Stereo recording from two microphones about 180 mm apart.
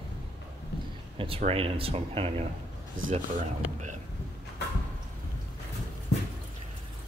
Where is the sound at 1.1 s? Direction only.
30° right (ahead or behind).